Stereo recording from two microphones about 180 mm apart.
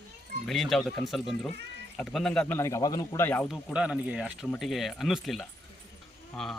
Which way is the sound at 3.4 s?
5° right (ahead or behind).